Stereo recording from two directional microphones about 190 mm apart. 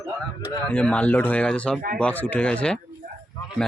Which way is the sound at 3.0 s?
40° right (ahead or behind).